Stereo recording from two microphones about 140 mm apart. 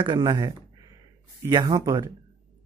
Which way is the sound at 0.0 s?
30° right (ahead or behind).